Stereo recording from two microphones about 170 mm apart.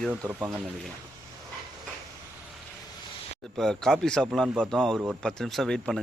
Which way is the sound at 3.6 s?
5° left (ahead or behind).